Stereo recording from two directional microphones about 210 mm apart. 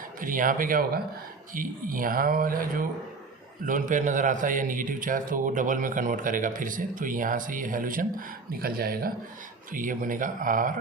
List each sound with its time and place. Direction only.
0.2 s a man's voice: 40° right (ahead or behind)